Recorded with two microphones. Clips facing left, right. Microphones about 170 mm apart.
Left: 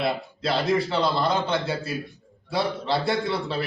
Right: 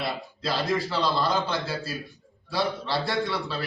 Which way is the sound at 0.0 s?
25° left (ahead or behind).